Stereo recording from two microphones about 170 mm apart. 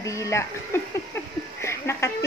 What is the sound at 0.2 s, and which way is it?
Speech, 15° left (ahead or behind).